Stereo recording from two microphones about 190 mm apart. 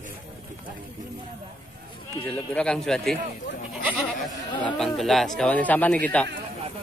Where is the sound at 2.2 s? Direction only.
5° left (ahead or behind).